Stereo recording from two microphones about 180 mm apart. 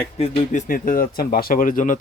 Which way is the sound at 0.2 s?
35° left (ahead or behind).